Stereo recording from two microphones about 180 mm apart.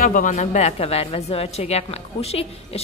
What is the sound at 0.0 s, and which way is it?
A woman's voice, 50° left (ahead or behind).